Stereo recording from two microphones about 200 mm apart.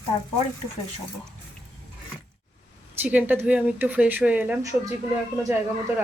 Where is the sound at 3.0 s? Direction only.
10° right (ahead or behind).